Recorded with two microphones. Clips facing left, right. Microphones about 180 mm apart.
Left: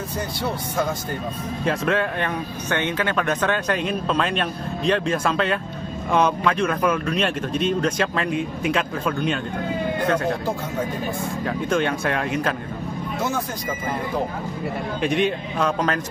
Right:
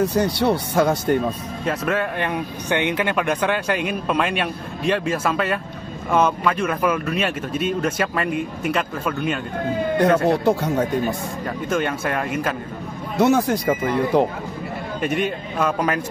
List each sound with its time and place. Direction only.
0.0 s speech: 75° right (ahead or behind)
1.6 s speech: 5° right (ahead or behind)
9.9 s speech: 70° right (ahead or behind)
11.4 s speech: 5° right (ahead or behind)
13.2 s speech: 70° right (ahead or behind)
15.0 s speech: 5° right (ahead or behind)